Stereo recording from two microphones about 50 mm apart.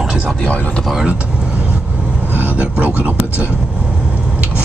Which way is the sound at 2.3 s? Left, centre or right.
Right.